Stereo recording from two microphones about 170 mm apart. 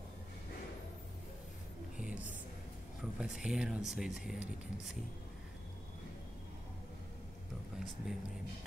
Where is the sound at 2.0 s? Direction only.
10° right (ahead or behind).